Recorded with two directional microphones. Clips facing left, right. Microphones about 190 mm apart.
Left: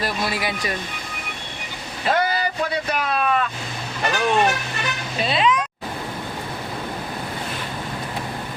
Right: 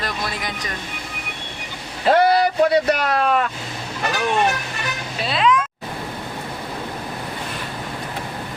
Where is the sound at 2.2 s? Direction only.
75° right (ahead or behind).